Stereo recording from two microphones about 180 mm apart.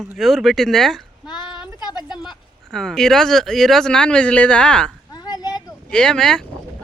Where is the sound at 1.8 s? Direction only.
25° left (ahead or behind).